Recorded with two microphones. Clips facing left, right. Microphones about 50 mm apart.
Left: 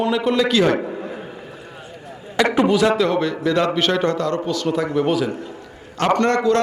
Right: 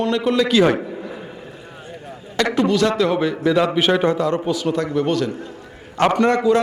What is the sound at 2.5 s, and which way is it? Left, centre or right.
Speech, centre.